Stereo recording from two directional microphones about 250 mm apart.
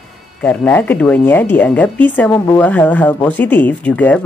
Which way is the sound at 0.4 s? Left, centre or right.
Centre.